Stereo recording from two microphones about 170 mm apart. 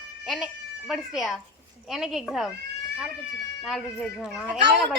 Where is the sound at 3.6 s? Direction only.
Centre (ahead or behind).